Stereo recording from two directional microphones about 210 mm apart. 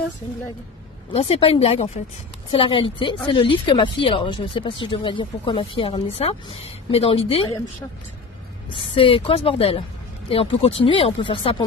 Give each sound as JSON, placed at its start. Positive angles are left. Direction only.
{"t": 1.1, "sound": "speech", "side_deg": 25}
{"t": 8.6, "sound": "speech", "side_deg": 25}